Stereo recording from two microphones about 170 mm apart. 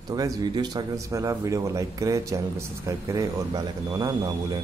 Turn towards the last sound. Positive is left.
turn(degrees=-25)  # may be behind; listen again after turning